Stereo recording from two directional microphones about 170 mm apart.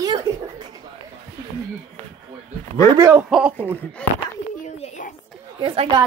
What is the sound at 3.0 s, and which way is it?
Speech, 15° right (ahead or behind).